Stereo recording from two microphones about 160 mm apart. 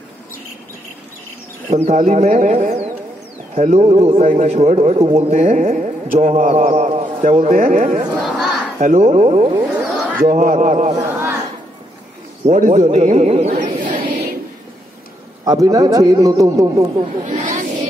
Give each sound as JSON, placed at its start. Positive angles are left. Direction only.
{"t": 1.7, "sound": "a man's voice", "side_deg": -45}
{"t": 6.5, "sound": "a sound", "side_deg": -45}
{"t": 7.5, "sound": "speech", "side_deg": -60}
{"t": 7.8, "sound": "a man's voice", "side_deg": -45}
{"t": 8.1, "sound": "crowd", "side_deg": -5}
{"t": 8.7, "sound": "a man's voice", "side_deg": -45}
{"t": 11.0, "sound": "chatter", "side_deg": -20}
{"t": 12.4, "sound": "a man's voice", "side_deg": -50}
{"t": 15.4, "sound": "a man's voice", "side_deg": -25}
{"t": 17.3, "sound": "a sound", "side_deg": -50}